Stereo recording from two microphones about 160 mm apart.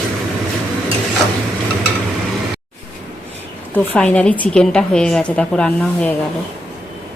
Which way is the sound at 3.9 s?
10° left (ahead or behind).